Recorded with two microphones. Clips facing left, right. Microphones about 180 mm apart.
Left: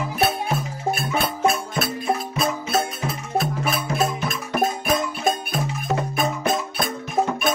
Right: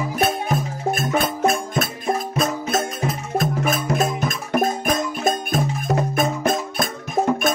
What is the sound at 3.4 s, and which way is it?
Music, 45° right (ahead or behind).